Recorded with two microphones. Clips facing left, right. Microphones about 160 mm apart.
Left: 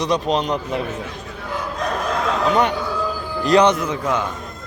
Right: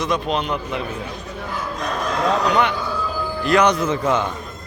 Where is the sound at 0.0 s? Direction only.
35° left (ahead or behind).